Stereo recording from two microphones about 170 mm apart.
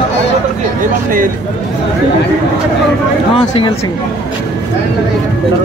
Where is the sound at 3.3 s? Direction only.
30° left (ahead or behind).